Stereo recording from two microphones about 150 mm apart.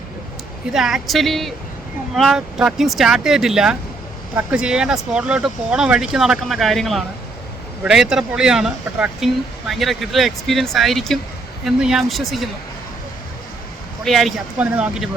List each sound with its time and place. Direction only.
0.7 s speech: 5° right (ahead or behind)
14.0 s speech: centre (ahead or behind)